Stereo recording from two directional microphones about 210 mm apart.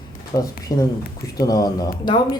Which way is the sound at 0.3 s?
15° left (ahead or behind).